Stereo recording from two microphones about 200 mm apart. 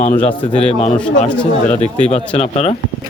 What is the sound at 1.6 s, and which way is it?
Speech, 35° left (ahead or behind).